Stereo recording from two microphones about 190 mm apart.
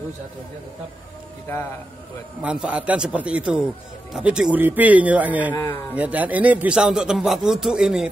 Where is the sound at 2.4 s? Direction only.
5° right (ahead or behind).